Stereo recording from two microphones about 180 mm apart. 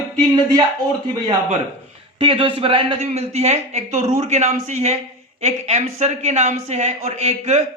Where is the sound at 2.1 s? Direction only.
30° right (ahead or behind).